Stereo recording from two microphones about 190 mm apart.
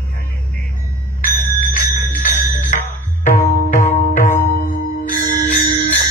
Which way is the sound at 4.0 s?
40° left (ahead or behind).